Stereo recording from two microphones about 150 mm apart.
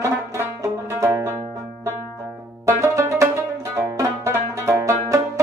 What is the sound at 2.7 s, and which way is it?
Music, 20° right (ahead or behind).